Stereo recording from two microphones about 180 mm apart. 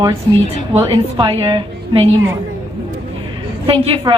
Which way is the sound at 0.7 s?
30° right (ahead or behind).